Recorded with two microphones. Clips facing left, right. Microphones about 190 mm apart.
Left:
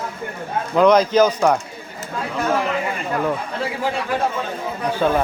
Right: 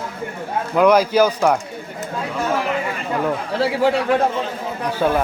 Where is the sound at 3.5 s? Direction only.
75° right (ahead or behind).